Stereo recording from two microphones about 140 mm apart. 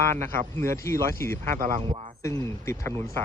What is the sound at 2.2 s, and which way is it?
Speech, 20° left (ahead or behind).